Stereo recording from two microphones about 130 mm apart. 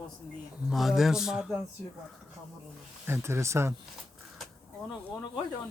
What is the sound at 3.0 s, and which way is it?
Speech, 20° right (ahead or behind).